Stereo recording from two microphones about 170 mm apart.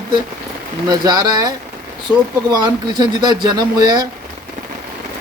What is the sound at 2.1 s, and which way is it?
Speech, 5° right (ahead or behind).